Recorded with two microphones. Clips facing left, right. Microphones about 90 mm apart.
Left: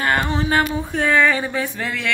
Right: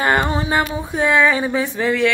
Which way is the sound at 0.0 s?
20° right (ahead or behind).